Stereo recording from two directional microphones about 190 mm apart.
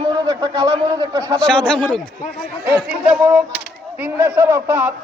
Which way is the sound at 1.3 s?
5° left (ahead or behind).